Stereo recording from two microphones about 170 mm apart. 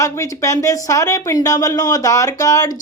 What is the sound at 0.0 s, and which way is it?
Speech, 20° left (ahead or behind).